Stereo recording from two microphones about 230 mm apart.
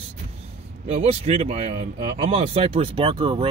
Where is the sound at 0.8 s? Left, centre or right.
Right.